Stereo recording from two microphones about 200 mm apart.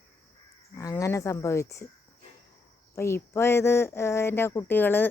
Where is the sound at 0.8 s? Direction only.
15° left (ahead or behind).